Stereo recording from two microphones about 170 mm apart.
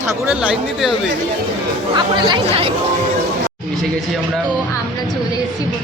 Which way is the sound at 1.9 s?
30° right (ahead or behind).